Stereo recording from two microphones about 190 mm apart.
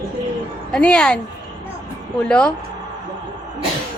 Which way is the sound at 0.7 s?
5° left (ahead or behind).